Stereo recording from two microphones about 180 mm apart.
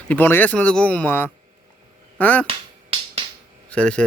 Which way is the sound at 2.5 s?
30° right (ahead or behind).